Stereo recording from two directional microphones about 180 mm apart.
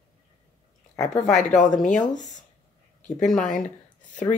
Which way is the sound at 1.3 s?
45° left (ahead or behind).